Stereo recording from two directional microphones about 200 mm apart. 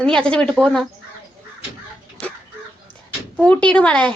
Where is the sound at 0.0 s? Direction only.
5° left (ahead or behind).